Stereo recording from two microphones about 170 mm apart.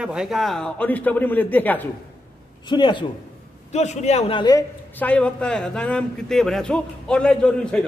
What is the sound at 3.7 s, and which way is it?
Speech, 40° left (ahead or behind).